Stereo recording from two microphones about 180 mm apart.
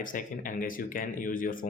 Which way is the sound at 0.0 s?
50° left (ahead or behind).